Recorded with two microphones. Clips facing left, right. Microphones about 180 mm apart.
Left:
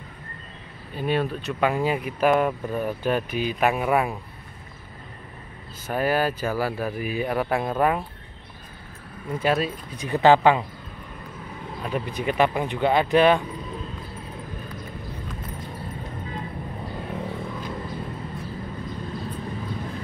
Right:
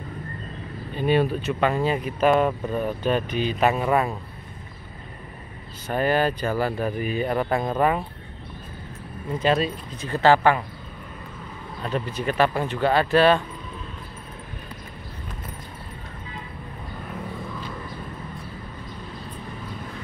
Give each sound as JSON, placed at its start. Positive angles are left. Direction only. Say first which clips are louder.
{"t": 0.9, "sound": "speech", "louder": "right 4 dB", "side_deg": 0}
{"t": 1.6, "sound": "speech", "louder": "left 1 dB", "side_deg": 10}
{"t": 5.9, "sound": "speech", "louder": "right 1 dB", "side_deg": 5}
{"t": 9.4, "sound": "speech", "louder": "right 1 dB", "side_deg": 10}
{"t": 11.8, "sound": "speech", "louder": "right 1 dB", "side_deg": 15}